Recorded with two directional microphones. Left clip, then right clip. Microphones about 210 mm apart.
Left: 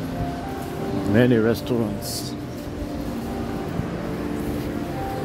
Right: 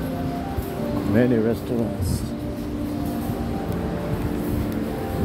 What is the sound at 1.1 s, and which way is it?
Speech, 20° left (ahead or behind).